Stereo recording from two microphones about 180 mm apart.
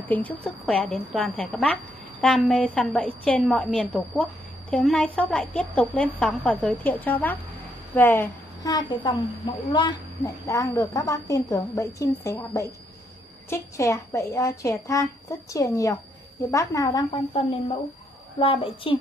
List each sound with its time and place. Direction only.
0.1 s a woman's voice: 10° left (ahead or behind); by 18.9 s 30° left (ahead or behind)